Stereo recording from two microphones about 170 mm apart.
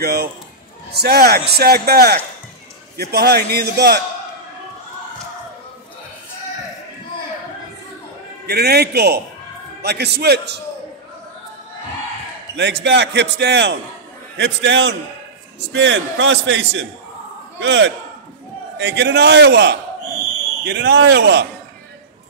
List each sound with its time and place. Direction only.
0.0 s a man's voice: 65° right (ahead or behind)
8.5 s a man's voice: 70° right (ahead or behind)
12.5 s a man's voice: 90° right
18.8 s a man's voice: 80° right